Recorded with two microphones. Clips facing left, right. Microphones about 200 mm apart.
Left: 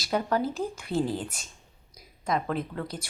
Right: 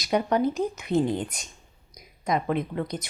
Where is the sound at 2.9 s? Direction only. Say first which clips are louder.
Right 5 dB; 5° right (ahead or behind).